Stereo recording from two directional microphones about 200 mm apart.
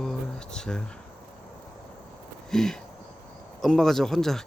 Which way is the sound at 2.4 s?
Centre (ahead or behind).